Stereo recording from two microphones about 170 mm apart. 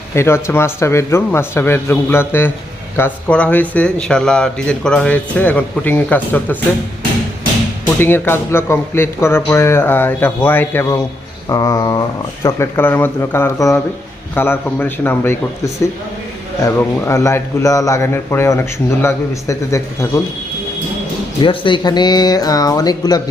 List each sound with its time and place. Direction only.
0.1 s speech: 15° left (ahead or behind)
7.9 s speech: 10° left (ahead or behind)
16.6 s speech: 15° left (ahead or behind)
21.4 s speech: 30° left (ahead or behind)